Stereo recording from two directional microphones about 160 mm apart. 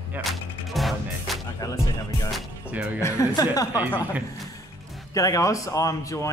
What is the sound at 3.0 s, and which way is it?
Speech, 20° left (ahead or behind).